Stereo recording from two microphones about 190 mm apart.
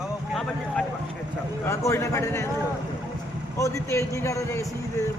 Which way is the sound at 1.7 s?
15° left (ahead or behind).